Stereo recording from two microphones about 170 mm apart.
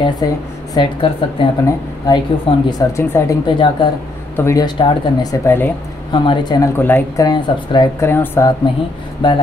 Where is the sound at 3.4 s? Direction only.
30° left (ahead or behind); by 5.7 s 10° left (ahead or behind).